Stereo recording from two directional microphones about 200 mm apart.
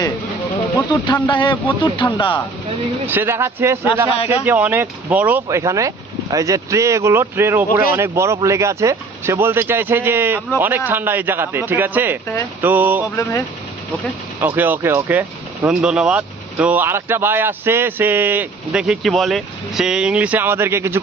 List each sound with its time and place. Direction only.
0.8 s speech: 20° left (ahead or behind)
3.1 s speech: 10° right (ahead or behind)
14.4 s speech: 10° right (ahead or behind)